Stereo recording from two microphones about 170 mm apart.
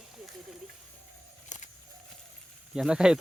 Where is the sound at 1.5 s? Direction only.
45° left (ahead or behind).